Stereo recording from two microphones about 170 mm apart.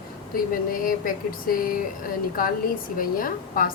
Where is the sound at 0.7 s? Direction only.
55° left (ahead or behind).